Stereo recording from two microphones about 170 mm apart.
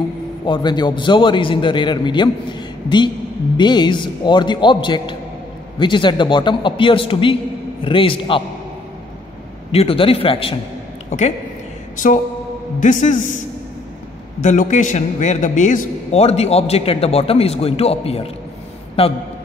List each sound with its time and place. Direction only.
0.5 s a man's voice: 25° left (ahead or behind)
3.5 s a man's voice: 25° left (ahead or behind)
9.7 s a man's voice: 35° left (ahead or behind)
11.1 s a woman's voice: 45° left (ahead or behind)
12.8 s a man's voice: 45° left (ahead or behind)
14.4 s a man's voice: 45° left (ahead or behind)
16.2 s a man's voice: 35° left (ahead or behind)